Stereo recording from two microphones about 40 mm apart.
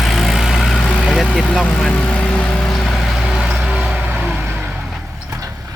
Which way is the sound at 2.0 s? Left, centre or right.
Left.